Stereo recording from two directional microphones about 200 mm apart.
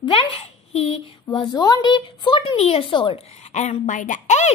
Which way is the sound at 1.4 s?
20° left (ahead or behind).